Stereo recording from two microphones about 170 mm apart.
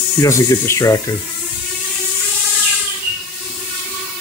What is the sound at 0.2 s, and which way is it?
Speech, 15° left (ahead or behind).